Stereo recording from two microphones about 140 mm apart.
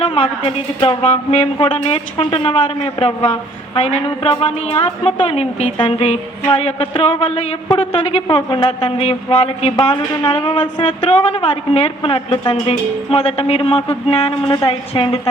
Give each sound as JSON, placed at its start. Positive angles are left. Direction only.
{"t": 0.0, "sound": "a woman's voice", "side_deg": 40}
{"t": 8.4, "sound": "a woman's voice", "side_deg": 35}
{"t": 11.1, "sound": "a woman's voice", "side_deg": 50}
{"t": 14.4, "sound": "a woman's voice", "side_deg": 25}
{"t": 14.7, "sound": "a woman's voice", "side_deg": 40}